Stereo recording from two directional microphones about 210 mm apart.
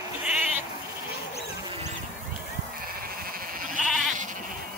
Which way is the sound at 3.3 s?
40° right (ahead or behind).